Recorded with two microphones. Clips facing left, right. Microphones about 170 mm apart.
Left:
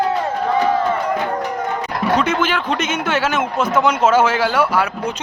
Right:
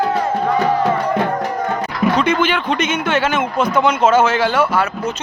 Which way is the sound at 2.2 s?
5° left (ahead or behind).